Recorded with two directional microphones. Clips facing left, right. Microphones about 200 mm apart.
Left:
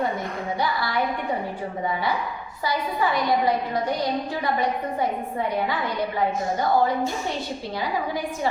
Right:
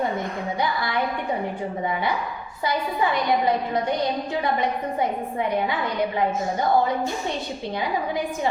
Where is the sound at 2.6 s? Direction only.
20° right (ahead or behind).